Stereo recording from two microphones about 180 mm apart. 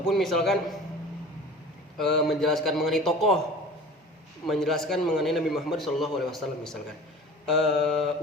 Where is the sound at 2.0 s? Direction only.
Centre (ahead or behind).